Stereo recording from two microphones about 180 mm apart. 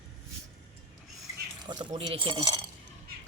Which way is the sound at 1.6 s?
25° right (ahead or behind).